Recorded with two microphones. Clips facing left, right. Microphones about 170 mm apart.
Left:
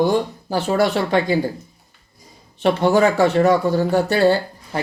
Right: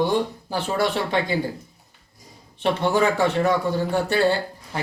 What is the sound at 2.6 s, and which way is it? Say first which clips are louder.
Speech: left 5 dB; 40° left (ahead or behind).